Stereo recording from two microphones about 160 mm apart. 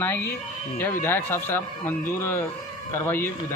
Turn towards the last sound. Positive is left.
turn(degrees=15)  # may be behind; listen again after turning